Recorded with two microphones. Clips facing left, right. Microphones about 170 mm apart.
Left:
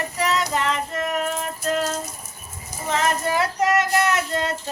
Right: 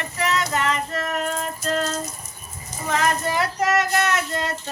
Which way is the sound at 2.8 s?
25° left (ahead or behind).